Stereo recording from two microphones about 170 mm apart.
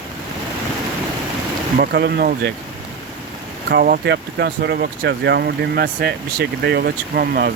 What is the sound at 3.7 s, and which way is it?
Speech, 70° right (ahead or behind).